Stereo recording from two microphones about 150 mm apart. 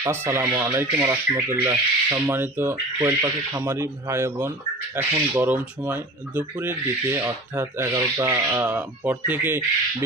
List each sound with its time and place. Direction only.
0.0 s speech: 15° right (ahead or behind)